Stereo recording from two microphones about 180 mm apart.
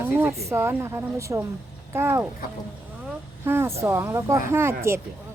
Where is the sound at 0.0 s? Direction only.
10° right (ahead or behind).